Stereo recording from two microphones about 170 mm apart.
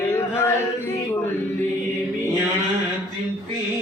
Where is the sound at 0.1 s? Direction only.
15° left (ahead or behind).